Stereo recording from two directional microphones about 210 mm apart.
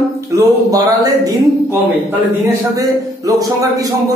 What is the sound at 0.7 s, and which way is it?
Speech, 15° right (ahead or behind).